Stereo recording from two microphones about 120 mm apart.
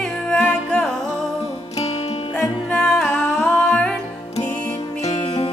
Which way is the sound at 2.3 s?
5° left (ahead or behind).